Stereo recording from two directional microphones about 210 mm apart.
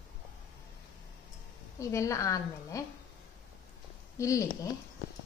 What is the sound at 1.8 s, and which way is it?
A woman's voice, 15° left (ahead or behind).